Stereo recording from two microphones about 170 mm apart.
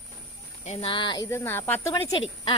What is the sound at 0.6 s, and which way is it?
Speech, 40° left (ahead or behind).